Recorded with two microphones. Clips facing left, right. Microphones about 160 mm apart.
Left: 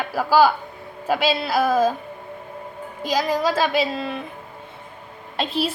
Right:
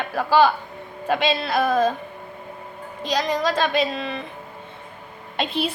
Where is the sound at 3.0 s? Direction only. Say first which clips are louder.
Left 1 dB; 5° left (ahead or behind).